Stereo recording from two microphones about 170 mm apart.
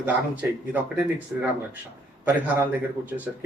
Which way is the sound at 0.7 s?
10° right (ahead or behind).